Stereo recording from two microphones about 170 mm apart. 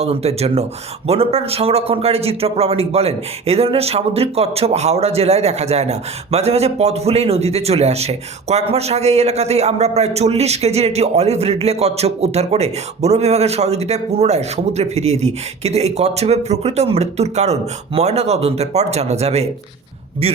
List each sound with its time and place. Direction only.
0.0 s a man's voice: 40° right (ahead or behind)